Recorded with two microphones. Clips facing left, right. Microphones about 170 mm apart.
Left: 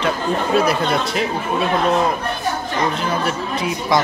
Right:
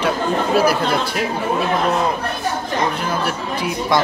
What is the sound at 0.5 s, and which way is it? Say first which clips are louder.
Speech: right 1 dB; centre (ahead or behind).